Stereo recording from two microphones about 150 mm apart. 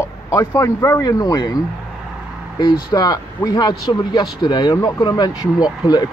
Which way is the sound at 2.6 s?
25° left (ahead or behind).